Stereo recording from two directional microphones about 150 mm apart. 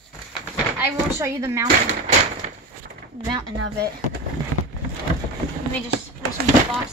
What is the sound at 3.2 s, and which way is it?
Speech, 25° right (ahead or behind).